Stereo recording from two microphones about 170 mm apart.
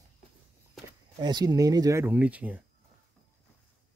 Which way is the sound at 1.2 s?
25° right (ahead or behind).